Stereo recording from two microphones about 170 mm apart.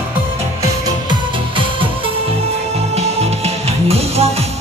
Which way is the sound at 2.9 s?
35° right (ahead or behind).